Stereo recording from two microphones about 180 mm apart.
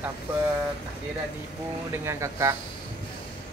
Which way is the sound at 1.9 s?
15° right (ahead or behind).